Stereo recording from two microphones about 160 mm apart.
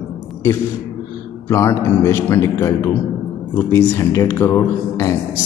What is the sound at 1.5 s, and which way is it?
Speech, 15° left (ahead or behind).